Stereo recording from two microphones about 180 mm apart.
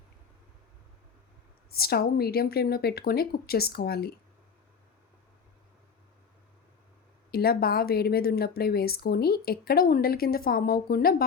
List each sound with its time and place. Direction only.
1.7 s a woman's voice: 60° left (ahead or behind)
7.3 s a woman's voice: 60° left (ahead or behind)